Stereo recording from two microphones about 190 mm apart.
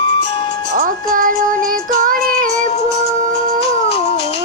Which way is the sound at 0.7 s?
45° right (ahead or behind).